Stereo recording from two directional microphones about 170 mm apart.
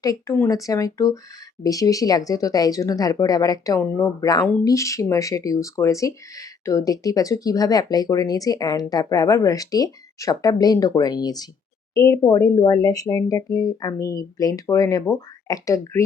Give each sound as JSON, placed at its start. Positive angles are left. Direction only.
{"t": 0.0, "sound": "speech", "side_deg": 20}